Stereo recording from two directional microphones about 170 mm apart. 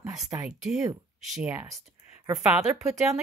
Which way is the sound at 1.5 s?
15° right (ahead or behind).